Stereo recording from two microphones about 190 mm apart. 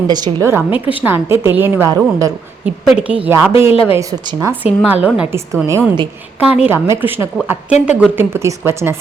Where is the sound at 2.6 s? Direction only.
5° right (ahead or behind).